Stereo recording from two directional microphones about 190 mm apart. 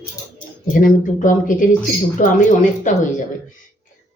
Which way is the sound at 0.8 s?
45° left (ahead or behind).